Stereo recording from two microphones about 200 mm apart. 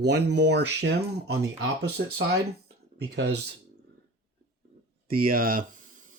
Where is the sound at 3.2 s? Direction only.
55° right (ahead or behind).